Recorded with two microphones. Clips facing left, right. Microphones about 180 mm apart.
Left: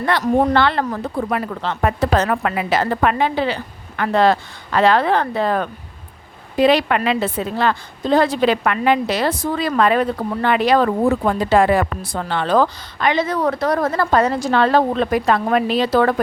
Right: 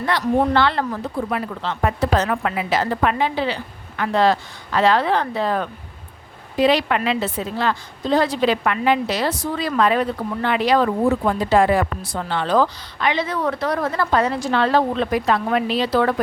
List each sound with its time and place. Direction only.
0.0 s a woman's voice: 55° left (ahead or behind)